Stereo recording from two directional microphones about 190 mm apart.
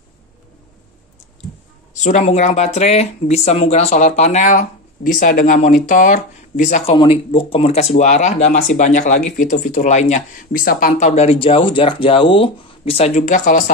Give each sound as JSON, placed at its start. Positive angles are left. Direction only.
{"t": 2.0, "sound": "speech", "side_deg": 40}